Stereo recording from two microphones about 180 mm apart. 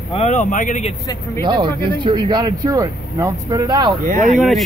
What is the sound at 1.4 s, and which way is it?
Speech, 25° right (ahead or behind).